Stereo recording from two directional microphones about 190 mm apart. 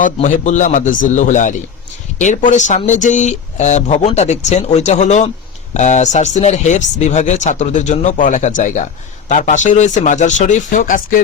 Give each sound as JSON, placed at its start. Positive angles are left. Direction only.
{"t": 0.0, "sound": "speech", "side_deg": 40}